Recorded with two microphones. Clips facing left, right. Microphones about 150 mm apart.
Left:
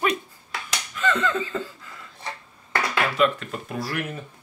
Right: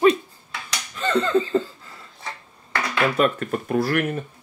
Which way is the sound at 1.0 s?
35° right (ahead or behind).